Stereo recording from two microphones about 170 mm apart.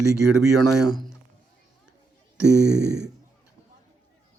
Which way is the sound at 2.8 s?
80° right.